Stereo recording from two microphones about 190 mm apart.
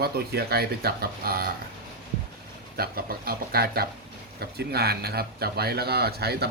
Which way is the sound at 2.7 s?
55° right (ahead or behind).